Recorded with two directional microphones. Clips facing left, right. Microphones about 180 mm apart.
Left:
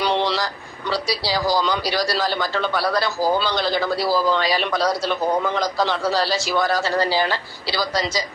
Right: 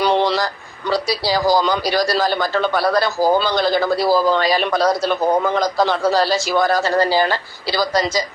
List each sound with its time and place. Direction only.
0.0 s vehicle: 45° right (ahead or behind)
0.9 s a man's voice: 50° right (ahead or behind)